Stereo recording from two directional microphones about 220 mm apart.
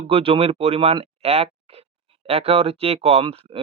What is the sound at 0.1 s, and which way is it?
Speech, 25° right (ahead or behind).